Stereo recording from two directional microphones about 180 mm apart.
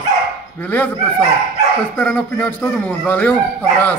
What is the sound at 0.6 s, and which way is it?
Speech, 10° left (ahead or behind).